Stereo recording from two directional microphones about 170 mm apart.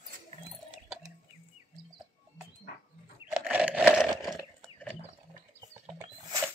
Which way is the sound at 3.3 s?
5° right (ahead or behind).